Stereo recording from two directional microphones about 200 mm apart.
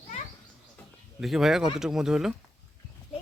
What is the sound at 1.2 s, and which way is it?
Speech, centre (ahead or behind).